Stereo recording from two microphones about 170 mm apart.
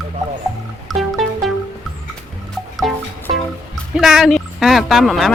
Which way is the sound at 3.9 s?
Centre (ahead or behind).